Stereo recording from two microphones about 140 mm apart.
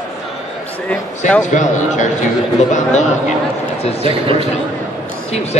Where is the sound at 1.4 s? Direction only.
60° left (ahead or behind).